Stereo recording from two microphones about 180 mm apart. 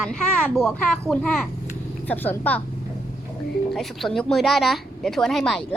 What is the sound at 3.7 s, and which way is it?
A child's voice, centre (ahead or behind).